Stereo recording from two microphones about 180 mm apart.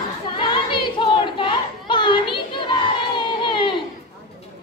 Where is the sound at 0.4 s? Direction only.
25° left (ahead or behind).